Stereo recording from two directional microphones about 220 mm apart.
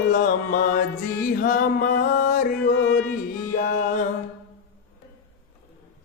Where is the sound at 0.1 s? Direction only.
40° left (ahead or behind).